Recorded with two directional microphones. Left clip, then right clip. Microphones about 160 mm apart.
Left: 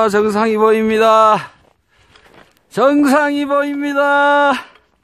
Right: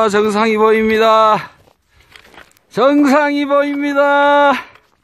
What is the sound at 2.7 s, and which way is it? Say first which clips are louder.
A man's voice: right 1 dB; centre (ahead or behind).